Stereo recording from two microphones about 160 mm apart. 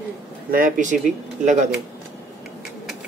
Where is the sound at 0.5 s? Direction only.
60° right (ahead or behind).